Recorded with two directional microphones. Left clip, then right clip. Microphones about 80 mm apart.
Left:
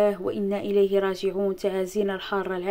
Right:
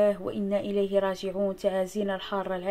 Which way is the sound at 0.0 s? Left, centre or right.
Left.